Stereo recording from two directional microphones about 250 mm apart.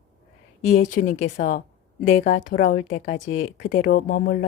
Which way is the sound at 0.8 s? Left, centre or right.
Left.